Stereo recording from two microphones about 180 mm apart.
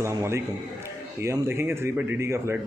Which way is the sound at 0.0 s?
15° right (ahead or behind).